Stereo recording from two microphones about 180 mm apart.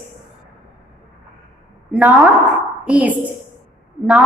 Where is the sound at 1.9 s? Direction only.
5° right (ahead or behind).